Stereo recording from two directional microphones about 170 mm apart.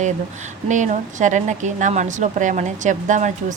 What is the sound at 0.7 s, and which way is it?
A woman's voice, 45° right (ahead or behind).